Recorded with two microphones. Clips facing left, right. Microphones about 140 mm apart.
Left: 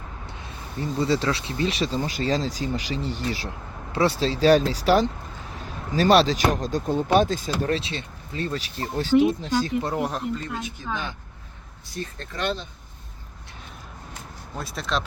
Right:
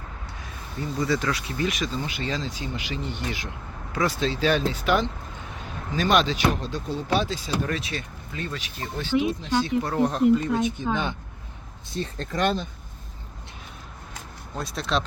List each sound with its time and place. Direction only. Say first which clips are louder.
0.8 s speech: left 2 dB; 30° left (ahead or behind); by 7.7 s 50° left (ahead or behind)
7.7 s speech: left 4 dB; 30° left (ahead or behind)
10.0 s speech: right 5 dB; centre (ahead or behind)
10.6 s speech: right 6 dB; 20° right (ahead or behind)
11.9 s speech: right 4 dB; 35° right (ahead or behind)
14.5 s speech: right 1 dB; centre (ahead or behind)